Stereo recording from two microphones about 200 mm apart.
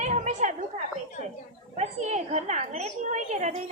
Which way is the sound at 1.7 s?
35° right (ahead or behind).